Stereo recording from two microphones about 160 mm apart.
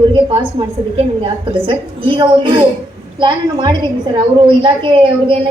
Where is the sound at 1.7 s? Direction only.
30° right (ahead or behind).